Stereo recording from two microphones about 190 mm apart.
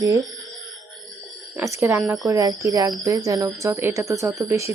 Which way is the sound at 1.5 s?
15° right (ahead or behind).